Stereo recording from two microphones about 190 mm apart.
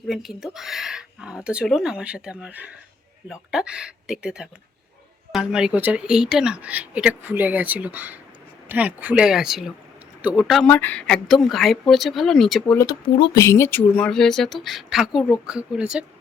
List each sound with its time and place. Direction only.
0.1 s speech: centre (ahead or behind)
10.7 s speech: 10° left (ahead or behind)
12.7 s speech: 20° left (ahead or behind)
13.4 s speech: 15° left (ahead or behind); by 16.0 s 5° right (ahead or behind)